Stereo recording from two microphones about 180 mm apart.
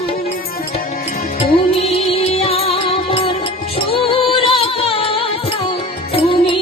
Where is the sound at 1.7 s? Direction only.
35° left (ahead or behind).